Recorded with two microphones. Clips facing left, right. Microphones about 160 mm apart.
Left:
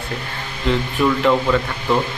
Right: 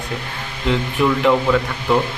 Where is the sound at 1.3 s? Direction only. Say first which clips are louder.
Right 1 dB; 15° right (ahead or behind).